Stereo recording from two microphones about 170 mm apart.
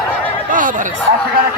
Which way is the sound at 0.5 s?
50° right (ahead or behind).